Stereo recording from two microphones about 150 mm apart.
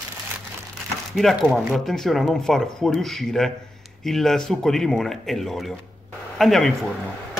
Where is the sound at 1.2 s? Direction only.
Centre (ahead or behind).